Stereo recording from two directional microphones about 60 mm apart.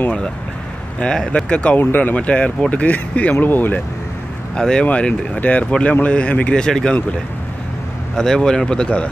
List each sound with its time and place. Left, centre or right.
0.9 s speech: centre
1.8 s speech: left
2.1 s speech: left
4.6 s speech: centre
8.2 s speech: centre